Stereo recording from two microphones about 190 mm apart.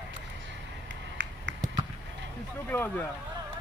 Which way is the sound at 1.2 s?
75° right (ahead or behind).